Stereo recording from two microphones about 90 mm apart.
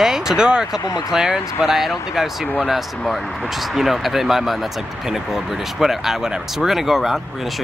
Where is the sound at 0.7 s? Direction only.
40° left (ahead or behind).